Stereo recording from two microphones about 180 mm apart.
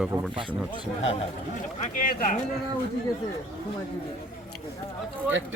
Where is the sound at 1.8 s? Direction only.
50° left (ahead or behind).